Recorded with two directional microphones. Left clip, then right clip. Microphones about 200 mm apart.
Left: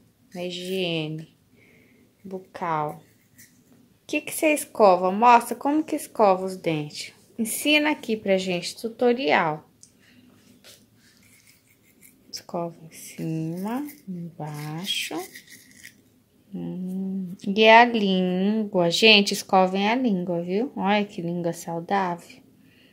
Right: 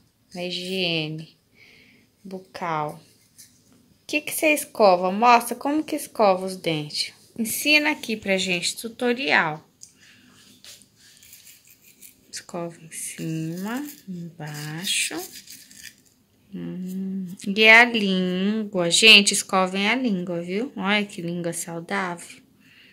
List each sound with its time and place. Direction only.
0.3 s a woman's voice: centre (ahead or behind)
2.2 s a woman's voice: centre (ahead or behind)
4.0 s a woman's voice: centre (ahead or behind)
12.5 s speech: 5° left (ahead or behind)
16.5 s a woman's voice: 5° left (ahead or behind)